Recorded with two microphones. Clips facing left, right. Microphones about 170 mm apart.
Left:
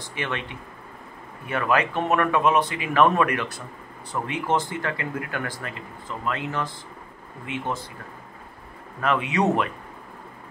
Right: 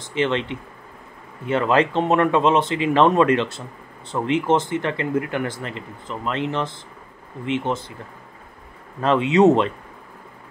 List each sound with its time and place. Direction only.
0.0 s speech: 20° right (ahead or behind)
9.0 s speech: 25° right (ahead or behind)